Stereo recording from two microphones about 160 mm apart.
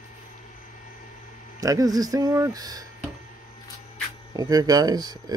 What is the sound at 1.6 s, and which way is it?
Speech, 20° right (ahead or behind).